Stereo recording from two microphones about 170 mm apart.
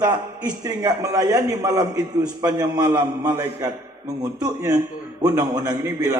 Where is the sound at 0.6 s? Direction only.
20° right (ahead or behind).